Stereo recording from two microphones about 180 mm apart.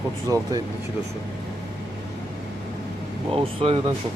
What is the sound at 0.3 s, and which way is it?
Speech, 15° right (ahead or behind).